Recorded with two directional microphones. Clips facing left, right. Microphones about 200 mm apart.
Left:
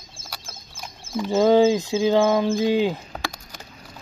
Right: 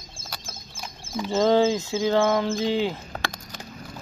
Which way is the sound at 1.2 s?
10° left (ahead or behind).